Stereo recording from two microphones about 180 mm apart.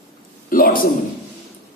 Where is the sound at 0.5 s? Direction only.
50° left (ahead or behind).